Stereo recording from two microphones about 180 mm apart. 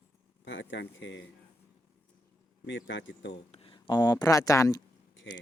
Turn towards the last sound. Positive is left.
turn(degrees=20)  # may be behind; listen again after turning